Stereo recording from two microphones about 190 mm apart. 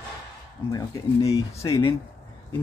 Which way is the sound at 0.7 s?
20° left (ahead or behind).